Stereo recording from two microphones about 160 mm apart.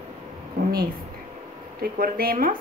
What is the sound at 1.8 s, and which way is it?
Speech, 70° right (ahead or behind).